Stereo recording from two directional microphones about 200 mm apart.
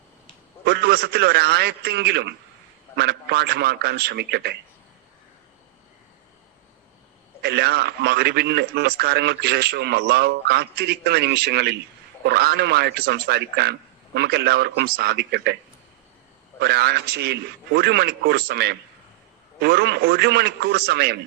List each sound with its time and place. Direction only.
0.6 s a man's voice: 55° right (ahead or behind)
7.4 s a man's voice: 55° right (ahead or behind)
16.6 s a man's voice: 55° right (ahead or behind)